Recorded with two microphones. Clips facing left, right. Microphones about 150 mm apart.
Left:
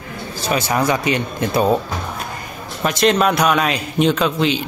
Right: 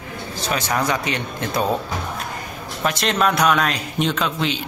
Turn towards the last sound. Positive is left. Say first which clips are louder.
# left 5 dB
turn(degrees=5)  # may be behind; listen again after turning